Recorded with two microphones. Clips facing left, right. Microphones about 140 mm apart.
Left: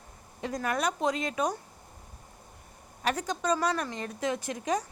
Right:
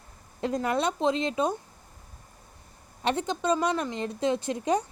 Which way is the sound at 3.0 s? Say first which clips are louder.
Right 3 dB; 25° right (ahead or behind).